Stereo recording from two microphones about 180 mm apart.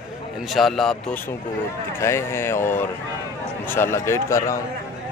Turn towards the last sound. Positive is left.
turn(degrees=15)  # may be behind; listen again after turning